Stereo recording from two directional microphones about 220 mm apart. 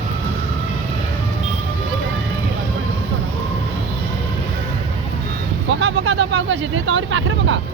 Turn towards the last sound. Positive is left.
turn(degrees=-55)  # may be behind; listen again after turning